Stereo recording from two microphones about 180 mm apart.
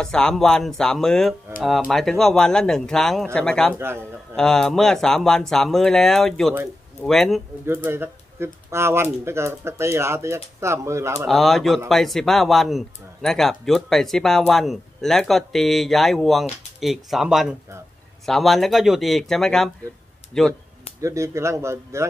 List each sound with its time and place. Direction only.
0.0 s speech: 5° left (ahead or behind)
3.7 s speech: 15° right (ahead or behind)
4.4 s speech: 5° left (ahead or behind)
7.6 s speech: 15° right (ahead or behind)
11.2 s speech: centre (ahead or behind)
21.0 s speech: 15° right (ahead or behind)